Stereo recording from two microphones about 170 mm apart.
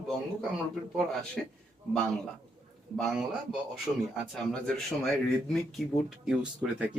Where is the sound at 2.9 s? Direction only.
Centre (ahead or behind).